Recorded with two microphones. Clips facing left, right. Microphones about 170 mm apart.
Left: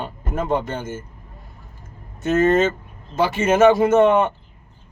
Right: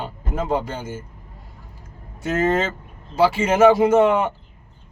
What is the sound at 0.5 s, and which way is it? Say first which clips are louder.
Speech: left 1 dB; 10° right (ahead or behind).